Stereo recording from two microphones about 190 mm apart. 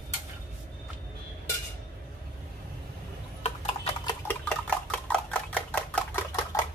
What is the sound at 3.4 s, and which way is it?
Horse, 30° left (ahead or behind).